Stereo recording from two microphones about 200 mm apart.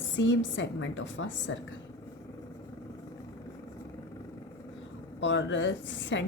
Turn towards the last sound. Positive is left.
turn(degrees=70)  # may be behind; listen again after turning